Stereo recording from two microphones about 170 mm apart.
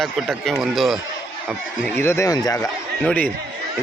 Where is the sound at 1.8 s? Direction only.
15° left (ahead or behind).